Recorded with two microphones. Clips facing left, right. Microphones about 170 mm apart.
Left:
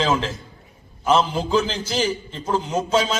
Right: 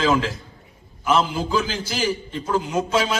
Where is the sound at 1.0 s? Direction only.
30° left (ahead or behind).